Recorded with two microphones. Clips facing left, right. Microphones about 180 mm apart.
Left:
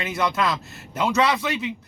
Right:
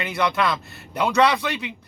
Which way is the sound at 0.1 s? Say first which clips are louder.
Right 1 dB; centre (ahead or behind).